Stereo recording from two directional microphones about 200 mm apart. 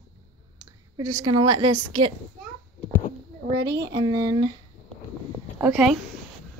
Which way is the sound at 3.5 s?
20° right (ahead or behind).